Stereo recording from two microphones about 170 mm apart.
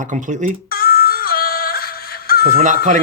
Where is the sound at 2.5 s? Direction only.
50° right (ahead or behind).